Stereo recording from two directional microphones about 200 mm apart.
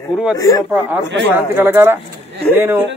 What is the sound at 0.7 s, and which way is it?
Speech, 10° right (ahead or behind).